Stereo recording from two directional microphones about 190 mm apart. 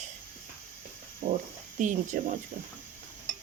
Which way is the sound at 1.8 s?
40° right (ahead or behind).